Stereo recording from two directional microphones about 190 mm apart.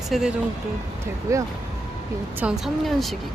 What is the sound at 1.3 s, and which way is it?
Speech, 15° right (ahead or behind).